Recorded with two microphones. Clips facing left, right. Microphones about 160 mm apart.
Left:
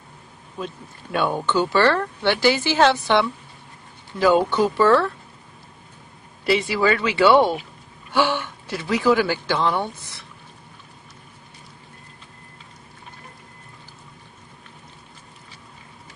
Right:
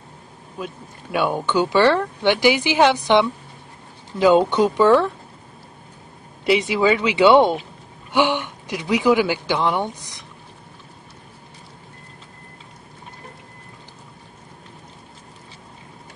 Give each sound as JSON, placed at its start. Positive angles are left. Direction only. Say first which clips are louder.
{"t": 0.6, "sound": "speech", "louder": "even", "side_deg": -10}
{"t": 6.4, "sound": "speech", "louder": "right 2 dB", "side_deg": -20}